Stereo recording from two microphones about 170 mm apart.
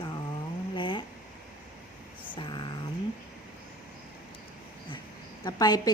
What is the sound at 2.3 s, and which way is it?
Speech, 30° left (ahead or behind).